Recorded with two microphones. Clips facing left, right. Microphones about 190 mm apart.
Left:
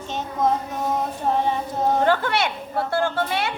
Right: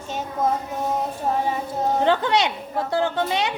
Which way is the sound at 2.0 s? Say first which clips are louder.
Right 4 dB; 20° right (ahead or behind).